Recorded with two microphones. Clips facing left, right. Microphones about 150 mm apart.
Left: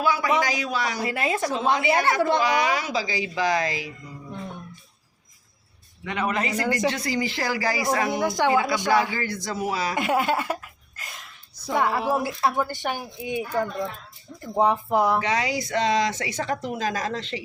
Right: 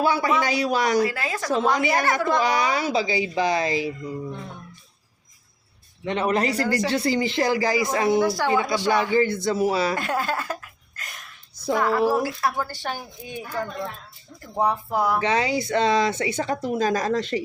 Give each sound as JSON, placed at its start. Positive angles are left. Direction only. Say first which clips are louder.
{"t": 0.0, "sound": "speech", "louder": "right 1 dB", "side_deg": -30}
{"t": 1.0, "sound": "speech", "louder": "left 1 dB", "side_deg": 25}
{"t": 2.4, "sound": "speech", "louder": "right 1 dB", "side_deg": -35}
{"t": 6.1, "sound": "speech", "louder": "right 4 dB", "side_deg": -30}
{"t": 8.2, "sound": "speech", "louder": "even", "side_deg": 20}
{"t": 8.7, "sound": "speech", "louder": "right 2 dB", "side_deg": -25}
{"t": 9.9, "sound": "speech", "louder": "left 2 dB", "side_deg": 20}
{"t": 15.2, "sound": "speech", "louder": "right 3 dB", "side_deg": -30}